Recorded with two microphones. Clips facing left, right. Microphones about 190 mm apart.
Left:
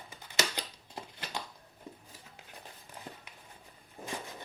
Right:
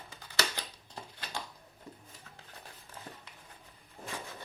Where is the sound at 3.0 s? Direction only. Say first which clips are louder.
Left 1 dB; 15° left (ahead or behind).